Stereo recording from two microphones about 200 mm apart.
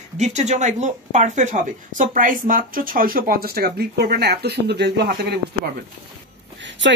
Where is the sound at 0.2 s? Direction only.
35° right (ahead or behind); by 5.1 s 55° right (ahead or behind).